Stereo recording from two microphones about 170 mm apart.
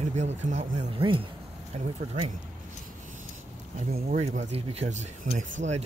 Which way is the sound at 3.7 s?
40° right (ahead or behind).